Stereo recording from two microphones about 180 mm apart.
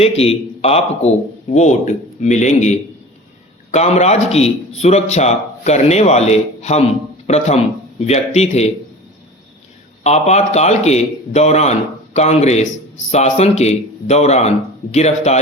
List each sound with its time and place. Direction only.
0.0 s a man's voice: 35° left (ahead or behind)
10.0 s a man's voice: 35° left (ahead or behind)